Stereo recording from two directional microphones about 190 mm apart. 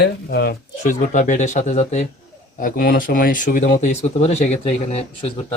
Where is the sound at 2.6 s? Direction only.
50° left (ahead or behind).